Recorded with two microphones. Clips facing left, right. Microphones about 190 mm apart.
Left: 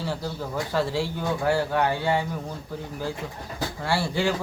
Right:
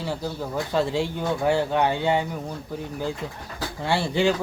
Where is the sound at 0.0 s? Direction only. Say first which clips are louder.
Right 1 dB; 15° right (ahead or behind).